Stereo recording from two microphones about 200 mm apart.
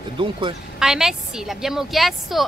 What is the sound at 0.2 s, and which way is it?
Speech, 25° right (ahead or behind).